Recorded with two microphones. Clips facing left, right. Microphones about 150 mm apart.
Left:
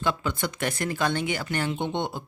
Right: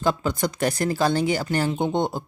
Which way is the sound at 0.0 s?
40° right (ahead or behind).